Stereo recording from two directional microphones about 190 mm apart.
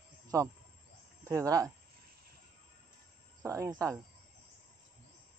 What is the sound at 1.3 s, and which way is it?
Speech, 15° right (ahead or behind).